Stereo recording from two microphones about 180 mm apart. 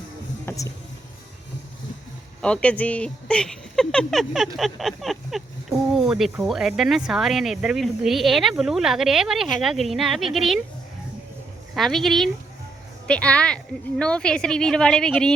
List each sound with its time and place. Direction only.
0.4 s speech: 20° left (ahead or behind)
2.4 s speech: 5° left (ahead or behind)
11.7 s speech: centre (ahead or behind)